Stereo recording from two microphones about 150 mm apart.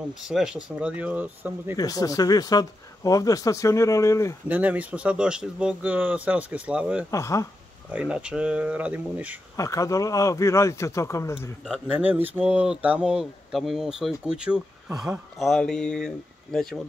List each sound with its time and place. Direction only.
0.2 s speech: 5° right (ahead or behind)
1.8 s speech: 25° left (ahead or behind)
4.5 s speech: 10° right (ahead or behind)
7.1 s speech: 20° left (ahead or behind)
7.9 s speech: 5° right (ahead or behind)
9.6 s speech: 20° left (ahead or behind)
11.9 s speech: 10° right (ahead or behind)